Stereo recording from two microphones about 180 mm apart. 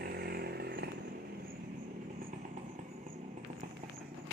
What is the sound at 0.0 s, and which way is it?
Vehicle, 60° right (ahead or behind).